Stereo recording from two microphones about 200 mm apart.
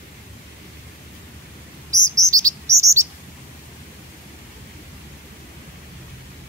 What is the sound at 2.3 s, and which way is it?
Chirp, 15° right (ahead or behind).